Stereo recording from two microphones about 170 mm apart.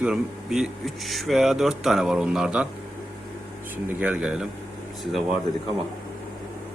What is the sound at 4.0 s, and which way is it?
Speech, 5° right (ahead or behind).